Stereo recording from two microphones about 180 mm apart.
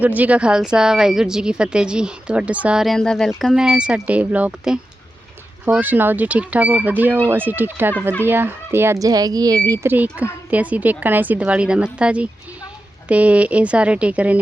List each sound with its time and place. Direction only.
0.0 s a woman's voice: 10° right (ahead or behind)